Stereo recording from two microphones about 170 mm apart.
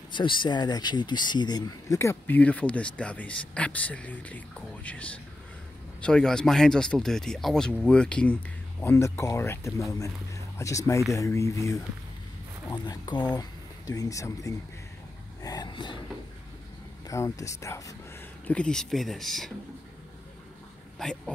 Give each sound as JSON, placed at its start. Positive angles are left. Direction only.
{"t": 0.1, "sound": "speech", "side_deg": 30}
{"t": 15.4, "sound": "a sound", "side_deg": 25}
{"t": 17.1, "sound": "speech", "side_deg": 20}
{"t": 18.5, "sound": "speech", "side_deg": 5}